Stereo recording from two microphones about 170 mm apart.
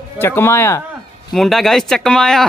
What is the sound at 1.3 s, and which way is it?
Speech, centre (ahead or behind).